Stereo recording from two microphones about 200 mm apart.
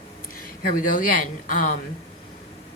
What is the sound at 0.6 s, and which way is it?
A woman's voice, 45° left (ahead or behind).